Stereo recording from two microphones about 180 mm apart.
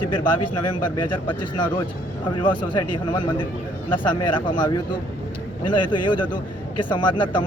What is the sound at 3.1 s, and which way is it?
Speech, 25° left (ahead or behind).